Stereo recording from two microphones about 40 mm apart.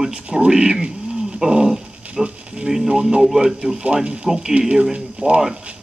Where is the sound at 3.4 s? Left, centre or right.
Centre.